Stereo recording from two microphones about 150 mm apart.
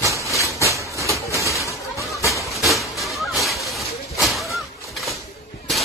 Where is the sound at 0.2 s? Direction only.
20° left (ahead or behind).